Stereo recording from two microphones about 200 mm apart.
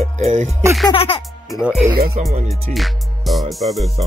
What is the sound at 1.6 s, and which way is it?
Speech, 5° right (ahead or behind).